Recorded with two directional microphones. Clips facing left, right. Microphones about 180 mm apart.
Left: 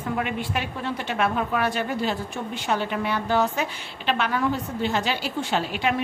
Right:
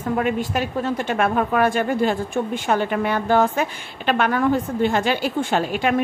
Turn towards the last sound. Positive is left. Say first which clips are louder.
# right 5 dB
turn(degrees=-45)  # may be behind; listen again after turning